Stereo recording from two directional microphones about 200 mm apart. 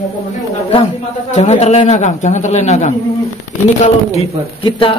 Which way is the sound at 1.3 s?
35° left (ahead or behind).